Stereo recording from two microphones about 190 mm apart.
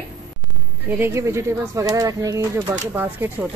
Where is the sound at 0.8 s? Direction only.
10° right (ahead or behind).